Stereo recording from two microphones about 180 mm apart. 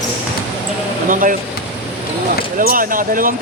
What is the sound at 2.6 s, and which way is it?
Basketball bounce, 50° right (ahead or behind).